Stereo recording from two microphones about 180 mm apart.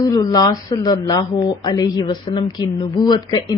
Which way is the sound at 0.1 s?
20° left (ahead or behind).